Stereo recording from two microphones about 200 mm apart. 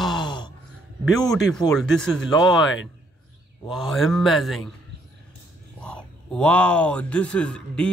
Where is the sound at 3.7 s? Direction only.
Centre (ahead or behind).